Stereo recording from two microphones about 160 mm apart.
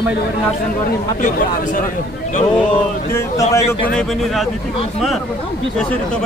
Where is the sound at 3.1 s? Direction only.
20° left (ahead or behind).